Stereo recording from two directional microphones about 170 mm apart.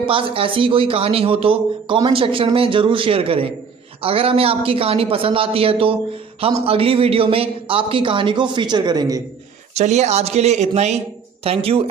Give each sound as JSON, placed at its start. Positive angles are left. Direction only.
{"t": 0.0, "sound": "speech", "side_deg": -30}
{"t": 9.8, "sound": "speech", "side_deg": -40}